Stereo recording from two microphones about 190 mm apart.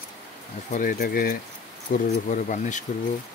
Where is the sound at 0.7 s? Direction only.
45° left (ahead or behind).